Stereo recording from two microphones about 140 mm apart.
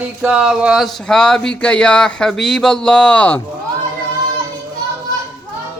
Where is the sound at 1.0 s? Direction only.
5° left (ahead or behind).